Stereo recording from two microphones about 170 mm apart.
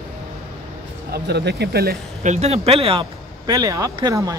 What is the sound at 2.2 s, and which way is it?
Speech, 40° right (ahead or behind).